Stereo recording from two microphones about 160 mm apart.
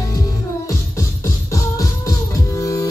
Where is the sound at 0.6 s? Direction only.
20° left (ahead or behind).